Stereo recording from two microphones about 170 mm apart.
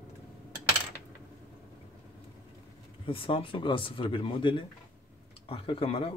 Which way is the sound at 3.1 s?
30° left (ahead or behind).